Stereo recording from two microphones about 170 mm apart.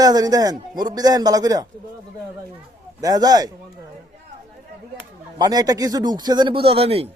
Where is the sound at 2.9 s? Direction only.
20° right (ahead or behind).